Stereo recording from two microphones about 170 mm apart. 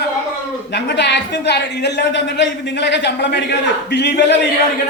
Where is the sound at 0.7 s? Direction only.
90° left.